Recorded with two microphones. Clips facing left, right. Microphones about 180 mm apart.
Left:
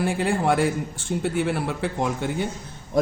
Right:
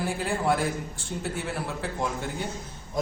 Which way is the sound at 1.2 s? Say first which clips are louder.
Left 8 dB; 70° left (ahead or behind).